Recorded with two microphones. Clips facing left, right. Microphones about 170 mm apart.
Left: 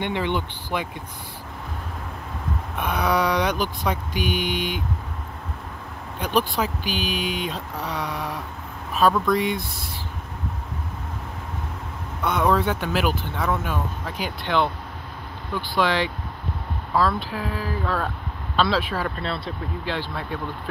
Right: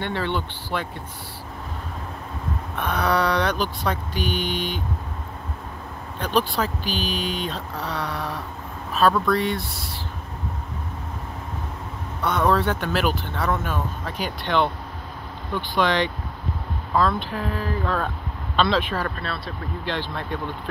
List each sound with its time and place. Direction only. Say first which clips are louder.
0.0 s speech: left 1 dB; 15° left (ahead or behind)
2.8 s speech: even; 10° left (ahead or behind)
6.1 s speech: even; 10° left (ahead or behind)
12.2 s speech: even; 10° left (ahead or behind)
19.2 s speech: left 2 dB; 25° left (ahead or behind)
19.8 s speech: right 2 dB; 10° left (ahead or behind)